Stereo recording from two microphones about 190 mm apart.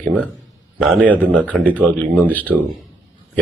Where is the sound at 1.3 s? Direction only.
5° left (ahead or behind).